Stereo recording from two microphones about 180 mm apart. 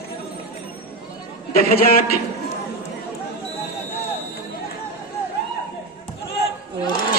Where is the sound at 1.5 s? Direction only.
55° left (ahead or behind).